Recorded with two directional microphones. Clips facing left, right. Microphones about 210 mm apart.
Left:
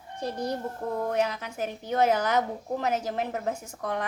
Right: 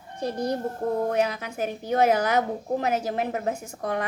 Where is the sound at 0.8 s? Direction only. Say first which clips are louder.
Right 6 dB; 35° right (ahead or behind).